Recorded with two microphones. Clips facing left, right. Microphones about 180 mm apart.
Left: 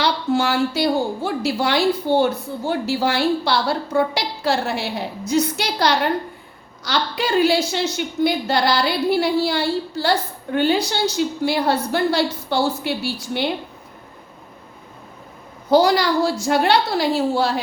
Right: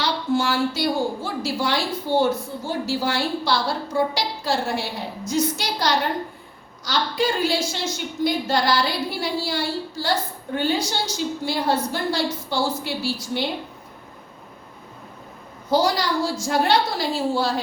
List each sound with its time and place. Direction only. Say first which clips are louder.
0.0 s a woman's voice: left 3 dB; 65° left (ahead or behind)
15.7 s a woman's voice: left 5 dB; 65° left (ahead or behind)